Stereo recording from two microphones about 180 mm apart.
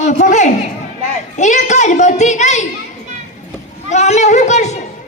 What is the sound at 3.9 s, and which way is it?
Speech, 40° left (ahead or behind).